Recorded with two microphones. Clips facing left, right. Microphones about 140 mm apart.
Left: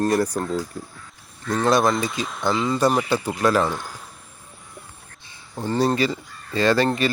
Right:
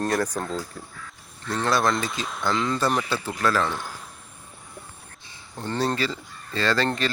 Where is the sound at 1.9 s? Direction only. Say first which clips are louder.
Left 3 dB; centre (ahead or behind); by 3.7 s 15° left (ahead or behind).